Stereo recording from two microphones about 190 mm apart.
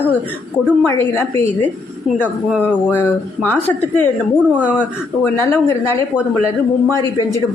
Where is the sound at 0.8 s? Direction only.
15° left (ahead or behind).